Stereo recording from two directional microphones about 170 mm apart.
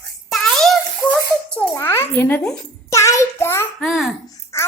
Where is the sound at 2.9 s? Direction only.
20° left (ahead or behind).